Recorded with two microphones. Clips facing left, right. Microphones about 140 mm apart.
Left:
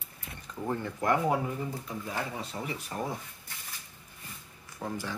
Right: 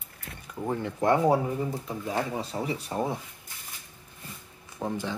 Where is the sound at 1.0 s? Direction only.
25° right (ahead or behind).